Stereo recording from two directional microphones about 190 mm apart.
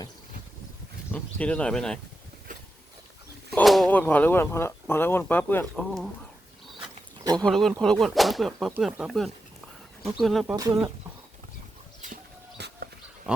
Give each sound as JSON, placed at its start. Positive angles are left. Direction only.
{"t": 1.1, "sound": "speech", "side_deg": 5}
{"t": 3.5, "sound": "speech", "side_deg": 0}
{"t": 7.4, "sound": "speech", "side_deg": 5}
{"t": 10.4, "sound": "speech", "side_deg": -20}
{"t": 12.5, "sound": "dog", "side_deg": -60}